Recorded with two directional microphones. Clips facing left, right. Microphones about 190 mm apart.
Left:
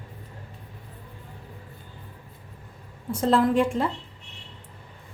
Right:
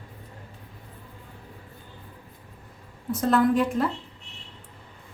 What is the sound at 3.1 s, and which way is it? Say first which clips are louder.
Speech: even; 30° left (ahead or behind).